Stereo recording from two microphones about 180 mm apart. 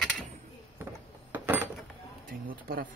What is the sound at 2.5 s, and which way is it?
Speech, 55° right (ahead or behind).